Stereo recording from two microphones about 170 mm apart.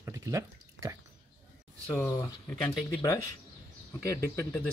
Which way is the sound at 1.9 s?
15° left (ahead or behind).